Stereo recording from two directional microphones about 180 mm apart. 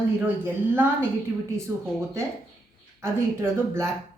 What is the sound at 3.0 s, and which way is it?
Speech, 15° right (ahead or behind).